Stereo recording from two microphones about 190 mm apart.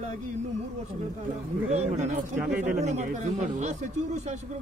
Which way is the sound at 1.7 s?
35° right (ahead or behind).